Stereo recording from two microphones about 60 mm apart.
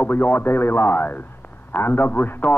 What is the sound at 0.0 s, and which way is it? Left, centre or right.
Speech, left.